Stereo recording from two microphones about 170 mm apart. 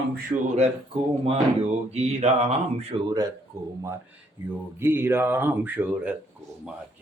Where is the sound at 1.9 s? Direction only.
40° right (ahead or behind).